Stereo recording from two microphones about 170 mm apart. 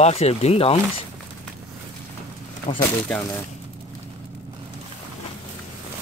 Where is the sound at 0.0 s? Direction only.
35° left (ahead or behind).